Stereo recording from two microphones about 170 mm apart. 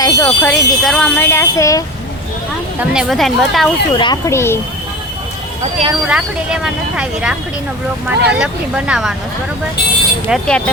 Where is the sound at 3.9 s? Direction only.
25° left (ahead or behind).